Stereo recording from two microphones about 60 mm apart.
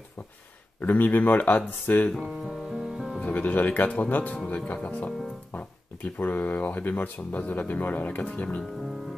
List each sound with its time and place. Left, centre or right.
0.7 s speech: left
2.2 s music: centre
3.2 s speech: left